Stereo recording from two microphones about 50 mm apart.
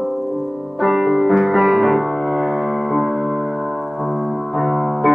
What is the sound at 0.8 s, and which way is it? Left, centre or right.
Music, centre.